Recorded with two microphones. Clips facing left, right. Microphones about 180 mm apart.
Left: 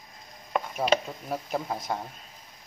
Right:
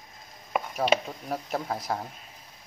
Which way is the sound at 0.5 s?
Centre (ahead or behind).